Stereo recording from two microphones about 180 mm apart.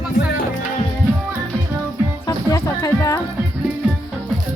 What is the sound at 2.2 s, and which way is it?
Music, 15° left (ahead or behind).